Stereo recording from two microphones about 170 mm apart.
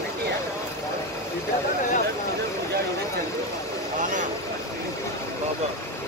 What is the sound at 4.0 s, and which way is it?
Speech, 50° right (ahead or behind).